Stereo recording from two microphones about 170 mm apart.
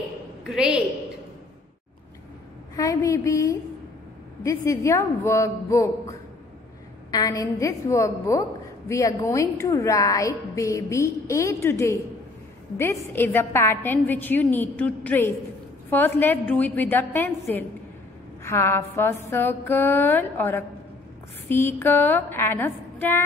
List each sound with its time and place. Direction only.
0.4 s a woman's voice: 5° right (ahead or behind)
2.7 s a sound: 20° left (ahead or behind)
4.4 s a woman's voice: 15° left (ahead or behind)